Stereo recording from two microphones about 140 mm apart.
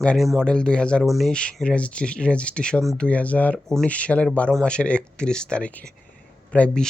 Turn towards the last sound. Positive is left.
turn(degrees=10)  # may be behind; listen again after turning